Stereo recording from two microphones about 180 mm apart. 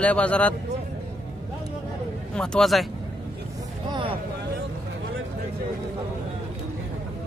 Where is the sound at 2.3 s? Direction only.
5° left (ahead or behind).